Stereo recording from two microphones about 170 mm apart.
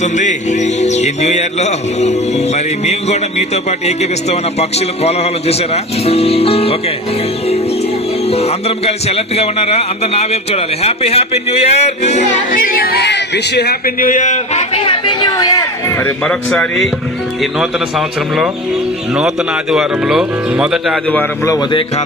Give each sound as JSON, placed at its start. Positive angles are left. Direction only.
{"t": 0.0, "sound": "a man's voice", "side_deg": 45}
{"t": 8.3, "sound": "a man's voice", "side_deg": 35}
{"t": 19.7, "sound": "speech", "side_deg": -5}
{"t": 21.1, "sound": "speech", "side_deg": 15}
{"t": 21.7, "sound": "a man's voice", "side_deg": 30}